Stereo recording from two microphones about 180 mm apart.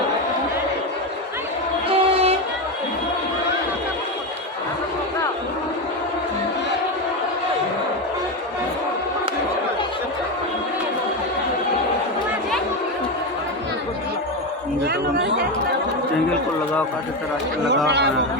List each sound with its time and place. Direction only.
1.9 s a sound: 35° right (ahead or behind)
14.8 s chatter: 65° right (ahead or behind)
17.8 s speech: 70° right (ahead or behind)